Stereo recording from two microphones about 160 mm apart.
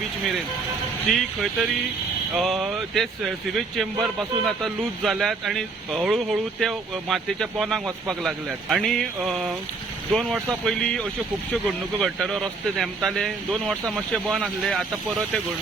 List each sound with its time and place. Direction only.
1.1 s speech: centre (ahead or behind)